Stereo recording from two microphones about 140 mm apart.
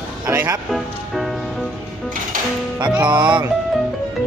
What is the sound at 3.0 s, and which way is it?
Speech, 30° right (ahead or behind).